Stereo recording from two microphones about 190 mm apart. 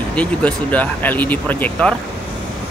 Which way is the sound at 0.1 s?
5° left (ahead or behind).